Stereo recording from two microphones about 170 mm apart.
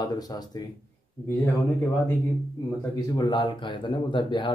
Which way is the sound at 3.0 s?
25° left (ahead or behind).